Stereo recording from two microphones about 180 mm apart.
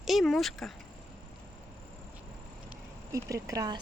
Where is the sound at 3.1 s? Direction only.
20° right (ahead or behind).